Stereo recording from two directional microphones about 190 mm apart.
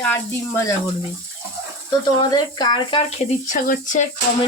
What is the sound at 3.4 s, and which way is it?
Speech, 45° left (ahead or behind).